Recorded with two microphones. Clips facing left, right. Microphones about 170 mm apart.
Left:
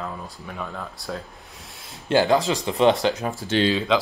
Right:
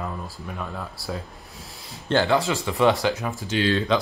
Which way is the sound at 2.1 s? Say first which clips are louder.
Left 2 dB; 15° left (ahead or behind).